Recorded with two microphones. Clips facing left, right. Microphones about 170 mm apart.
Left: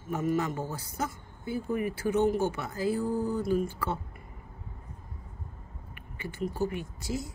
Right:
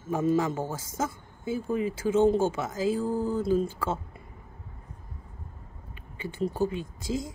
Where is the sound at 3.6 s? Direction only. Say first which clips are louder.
Right 2 dB; 25° right (ahead or behind).